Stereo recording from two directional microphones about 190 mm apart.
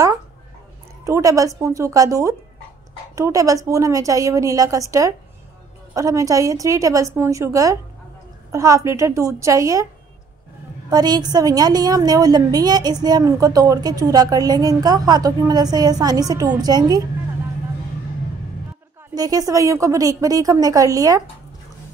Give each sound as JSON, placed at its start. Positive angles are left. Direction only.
{"t": 1.0, "sound": "a woman's voice", "side_deg": -15}
{"t": 10.9, "sound": "a woman's voice", "side_deg": -20}
{"t": 19.1, "sound": "a woman's voice", "side_deg": -20}